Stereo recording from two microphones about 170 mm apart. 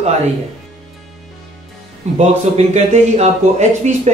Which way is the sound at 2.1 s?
40° right (ahead or behind).